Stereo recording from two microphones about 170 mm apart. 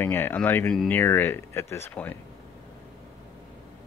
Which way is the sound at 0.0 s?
10° left (ahead or behind).